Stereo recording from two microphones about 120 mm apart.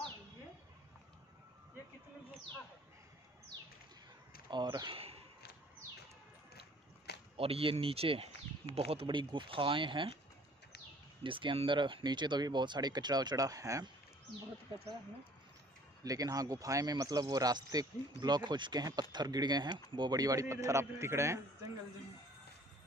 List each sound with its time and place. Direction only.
4.5 s speech: 40° right (ahead or behind)
7.3 s speech: 55° right (ahead or behind)
9.0 s speech: 40° right (ahead or behind)
11.2 s speech: 45° right (ahead or behind); by 13.8 s 30° right (ahead or behind)
16.0 s a man's voice: 30° right (ahead or behind)